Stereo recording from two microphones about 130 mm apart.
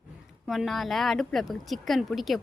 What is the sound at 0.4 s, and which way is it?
Speech, centre (ahead or behind).